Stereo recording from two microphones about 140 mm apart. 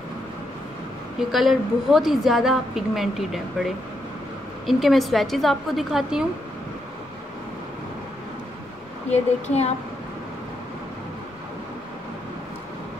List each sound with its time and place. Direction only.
1.3 s a woman's voice: centre (ahead or behind)
9.1 s speech: 50° left (ahead or behind)